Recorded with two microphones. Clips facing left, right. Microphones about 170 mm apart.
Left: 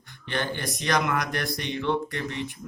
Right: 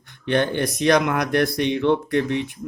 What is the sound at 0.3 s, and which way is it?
Speech, 60° right (ahead or behind).